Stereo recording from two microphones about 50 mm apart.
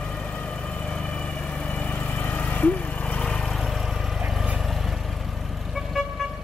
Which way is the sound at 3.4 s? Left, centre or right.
Centre.